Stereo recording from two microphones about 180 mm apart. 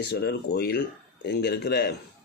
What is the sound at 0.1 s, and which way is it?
Speech, 60° left (ahead or behind).